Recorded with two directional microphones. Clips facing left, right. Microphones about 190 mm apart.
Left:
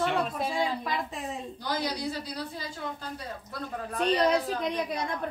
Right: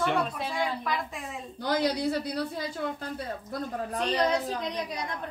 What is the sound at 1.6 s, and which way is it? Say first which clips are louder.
Speech: right 6 dB; 60° right (ahead or behind).